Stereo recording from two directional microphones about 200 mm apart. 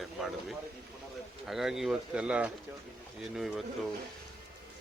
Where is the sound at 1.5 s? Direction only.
Centre (ahead or behind).